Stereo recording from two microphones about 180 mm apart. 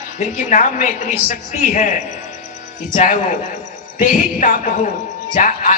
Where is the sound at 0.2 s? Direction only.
45° left (ahead or behind).